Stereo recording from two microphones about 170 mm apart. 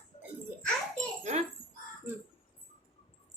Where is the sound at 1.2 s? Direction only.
40° right (ahead or behind).